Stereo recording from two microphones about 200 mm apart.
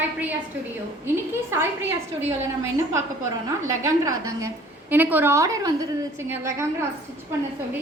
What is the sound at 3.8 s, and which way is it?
A woman's voice, 15° right (ahead or behind).